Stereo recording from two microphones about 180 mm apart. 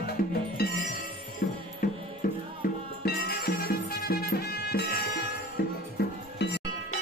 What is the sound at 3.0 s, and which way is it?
Music, 60° left (ahead or behind).